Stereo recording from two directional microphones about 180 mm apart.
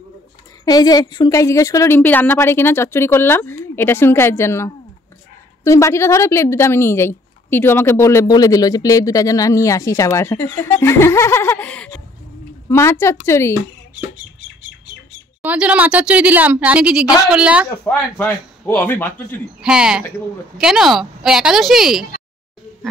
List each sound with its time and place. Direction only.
0.7 s a woman's voice: 20° left (ahead or behind)
15.4 s a woman's voice: 5° right (ahead or behind)
17.8 s a woman's voice: 10° left (ahead or behind)
19.6 s speech: 5° right (ahead or behind)